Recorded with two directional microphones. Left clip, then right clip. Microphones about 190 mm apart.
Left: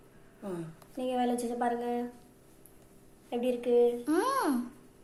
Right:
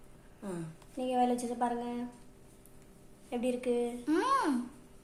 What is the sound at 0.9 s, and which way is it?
A woman's voice, 15° right (ahead or behind).